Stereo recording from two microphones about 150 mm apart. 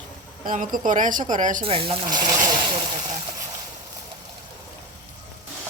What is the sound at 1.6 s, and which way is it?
Speech, 40° right (ahead or behind).